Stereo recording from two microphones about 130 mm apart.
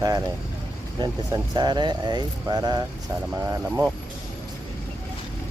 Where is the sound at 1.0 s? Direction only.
30° right (ahead or behind).